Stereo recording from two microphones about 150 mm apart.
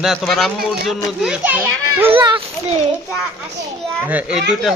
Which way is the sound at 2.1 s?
30° right (ahead or behind).